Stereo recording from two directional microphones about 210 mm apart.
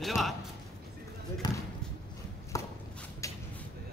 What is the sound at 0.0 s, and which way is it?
Speech, centre (ahead or behind).